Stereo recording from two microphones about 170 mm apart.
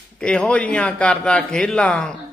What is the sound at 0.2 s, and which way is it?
A man's voice, 5° left (ahead or behind).